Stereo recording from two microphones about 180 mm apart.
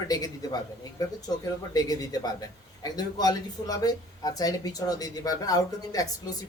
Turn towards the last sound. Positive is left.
turn(degrees=20)  # may be behind; listen again after turning